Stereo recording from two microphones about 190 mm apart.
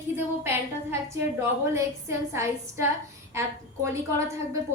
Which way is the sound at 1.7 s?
15° right (ahead or behind).